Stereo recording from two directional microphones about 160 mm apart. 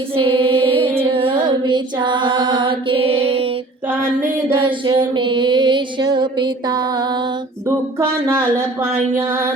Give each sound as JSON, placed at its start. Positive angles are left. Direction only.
{"t": 0.2, "sound": "music", "side_deg": -30}
{"t": 1.1, "sound": "female singing", "side_deg": -35}
{"t": 4.5, "sound": "music", "side_deg": -30}